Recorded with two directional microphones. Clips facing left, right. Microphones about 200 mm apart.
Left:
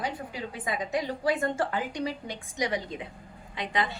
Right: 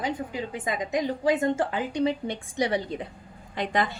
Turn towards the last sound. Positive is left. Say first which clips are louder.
# right 4 dB
turn(degrees=-45)  # may be behind; listen again after turning